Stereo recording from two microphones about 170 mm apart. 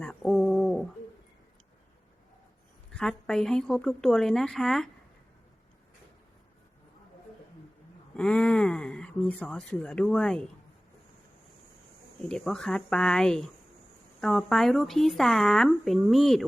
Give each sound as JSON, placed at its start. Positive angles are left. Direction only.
{"t": 0.0, "sound": "bird", "side_deg": 5}
{"t": 2.9, "sound": "speech", "side_deg": 5}
{"t": 8.1, "sound": "speech", "side_deg": 5}
{"t": 12.3, "sound": "speech", "side_deg": 5}